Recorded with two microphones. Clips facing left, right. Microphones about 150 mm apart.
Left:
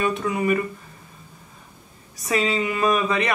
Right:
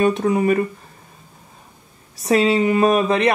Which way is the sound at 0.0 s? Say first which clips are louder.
Right 6 dB; 40° right (ahead or behind).